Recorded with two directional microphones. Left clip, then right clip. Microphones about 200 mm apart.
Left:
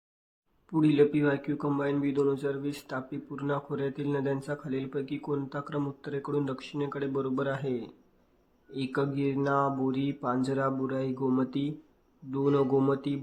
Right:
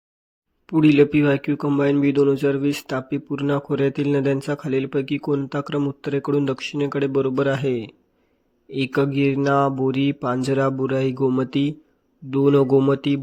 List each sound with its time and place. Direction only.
0.7 s speech: 35° right (ahead or behind)